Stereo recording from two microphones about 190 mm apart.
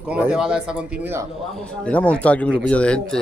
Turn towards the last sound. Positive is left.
turn(degrees=5)  # may be behind; listen again after turning